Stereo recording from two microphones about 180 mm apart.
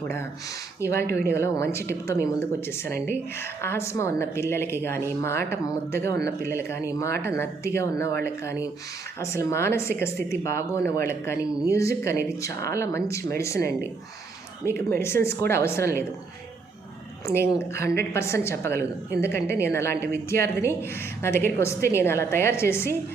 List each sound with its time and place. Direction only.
0.8 s speech: 15° left (ahead or behind)
17.2 s speech: 15° left (ahead or behind)